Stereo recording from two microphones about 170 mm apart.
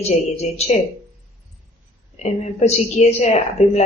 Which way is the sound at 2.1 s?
40° left (ahead or behind).